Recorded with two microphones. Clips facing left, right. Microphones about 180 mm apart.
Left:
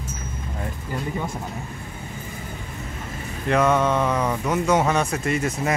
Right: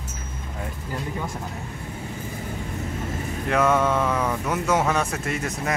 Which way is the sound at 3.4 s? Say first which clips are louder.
Left 1 dB; 5° right (ahead or behind).